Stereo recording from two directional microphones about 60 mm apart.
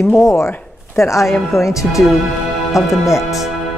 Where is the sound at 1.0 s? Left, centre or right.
Left.